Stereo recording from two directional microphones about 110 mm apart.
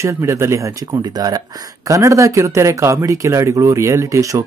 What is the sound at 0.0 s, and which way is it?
Speech, 25° right (ahead or behind).